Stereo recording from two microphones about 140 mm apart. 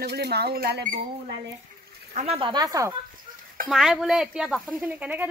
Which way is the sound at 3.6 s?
Centre (ahead or behind).